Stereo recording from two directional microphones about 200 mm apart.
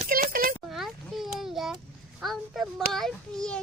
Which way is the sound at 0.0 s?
45° right (ahead or behind).